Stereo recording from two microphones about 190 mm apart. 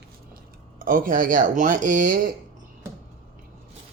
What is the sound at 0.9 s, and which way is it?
Speech, 45° right (ahead or behind).